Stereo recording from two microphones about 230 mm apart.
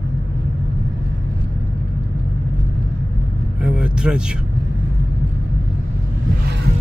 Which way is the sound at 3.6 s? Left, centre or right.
Centre.